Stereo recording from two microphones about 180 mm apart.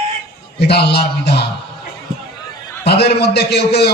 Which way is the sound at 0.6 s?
65° left (ahead or behind).